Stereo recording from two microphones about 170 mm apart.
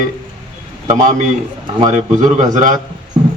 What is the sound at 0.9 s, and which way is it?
Speech, 45° right (ahead or behind).